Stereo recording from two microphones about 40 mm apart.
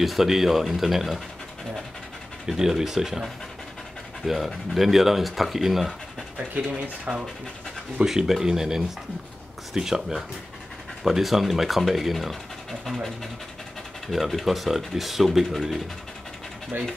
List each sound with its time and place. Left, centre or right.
0.0 s speech: centre
2.4 s speech: centre
4.3 s speech: centre
7.1 s speech: right
8.0 s speech: centre